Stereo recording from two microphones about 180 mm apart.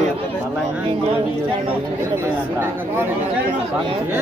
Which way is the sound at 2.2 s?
15° right (ahead or behind).